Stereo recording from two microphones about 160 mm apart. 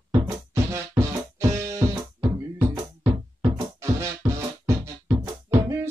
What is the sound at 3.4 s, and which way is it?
Music, 15° right (ahead or behind).